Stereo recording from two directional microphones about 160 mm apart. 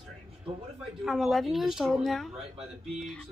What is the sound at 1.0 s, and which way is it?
Speech, centre (ahead or behind).